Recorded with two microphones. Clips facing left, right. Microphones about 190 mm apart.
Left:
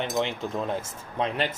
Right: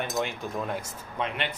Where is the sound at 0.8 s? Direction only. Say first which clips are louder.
Left 3 dB; 35° left (ahead or behind).